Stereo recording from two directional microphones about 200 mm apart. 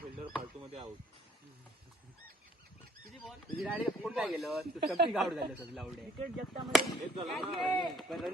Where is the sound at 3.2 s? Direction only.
Centre (ahead or behind).